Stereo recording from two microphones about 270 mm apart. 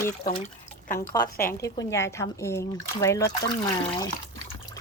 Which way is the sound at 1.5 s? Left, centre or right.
Centre.